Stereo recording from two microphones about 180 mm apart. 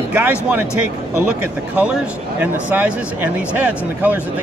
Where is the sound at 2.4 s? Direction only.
5° right (ahead or behind).